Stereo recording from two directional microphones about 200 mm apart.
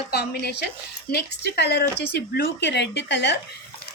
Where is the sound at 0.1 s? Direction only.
55° left (ahead or behind).